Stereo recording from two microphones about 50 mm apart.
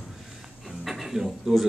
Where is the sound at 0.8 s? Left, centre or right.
Centre.